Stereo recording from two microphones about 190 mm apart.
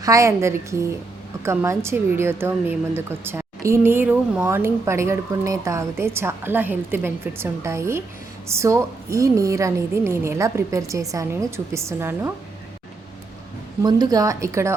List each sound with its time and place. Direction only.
0.0 s a woman's voice: 15° right (ahead or behind)
13.8 s a woman's voice: 20° right (ahead or behind)